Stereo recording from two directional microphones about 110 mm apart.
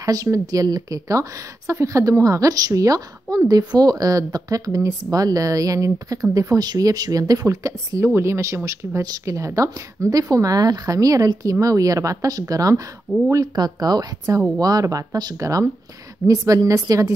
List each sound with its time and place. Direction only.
0.0 s speech: 30° right (ahead or behind)